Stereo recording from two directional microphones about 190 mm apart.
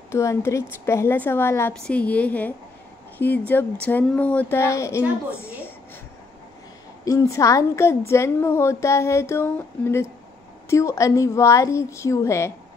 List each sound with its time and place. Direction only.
0.1 s a woman's voice: 15° left (ahead or behind)
7.1 s a woman's voice: 15° left (ahead or behind)